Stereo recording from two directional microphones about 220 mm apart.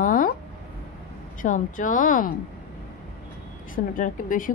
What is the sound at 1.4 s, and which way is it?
Speech, 35° left (ahead or behind).